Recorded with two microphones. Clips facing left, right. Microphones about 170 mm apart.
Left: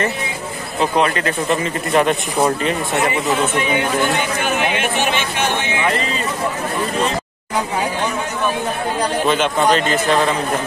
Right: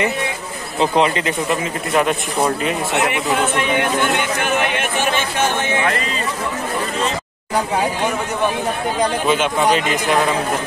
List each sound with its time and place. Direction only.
0.7 s speech: 20° right (ahead or behind)
1.6 s speech: centre (ahead or behind)
9.3 s speech: 10° right (ahead or behind)